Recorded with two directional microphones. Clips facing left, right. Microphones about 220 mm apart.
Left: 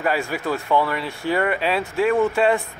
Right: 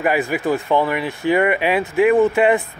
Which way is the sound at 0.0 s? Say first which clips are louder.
Right 4 dB; 15° right (ahead or behind).